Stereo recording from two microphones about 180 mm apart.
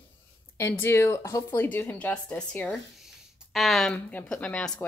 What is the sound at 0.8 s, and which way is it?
A woman's voice, 15° left (ahead or behind).